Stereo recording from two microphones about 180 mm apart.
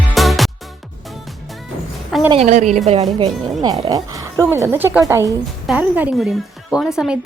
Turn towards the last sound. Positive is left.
turn(degrees=-5)  # may be behind; listen again after turning